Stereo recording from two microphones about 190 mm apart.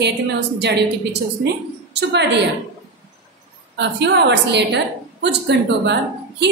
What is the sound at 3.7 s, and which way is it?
A woman's voice, 65° right (ahead or behind).